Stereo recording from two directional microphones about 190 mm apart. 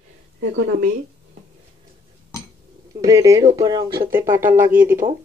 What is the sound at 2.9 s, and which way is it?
Speech, 20° right (ahead or behind).